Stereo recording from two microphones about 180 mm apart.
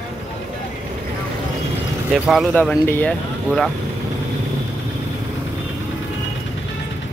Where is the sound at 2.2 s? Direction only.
Centre (ahead or behind).